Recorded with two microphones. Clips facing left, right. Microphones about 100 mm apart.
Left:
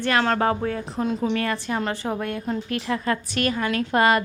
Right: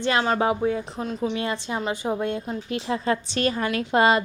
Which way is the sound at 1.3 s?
20° right (ahead or behind).